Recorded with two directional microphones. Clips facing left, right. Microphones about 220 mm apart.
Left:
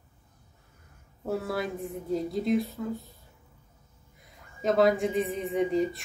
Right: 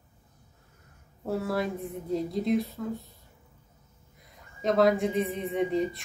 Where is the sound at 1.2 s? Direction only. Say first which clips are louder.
Right 1 dB; centre (ahead or behind).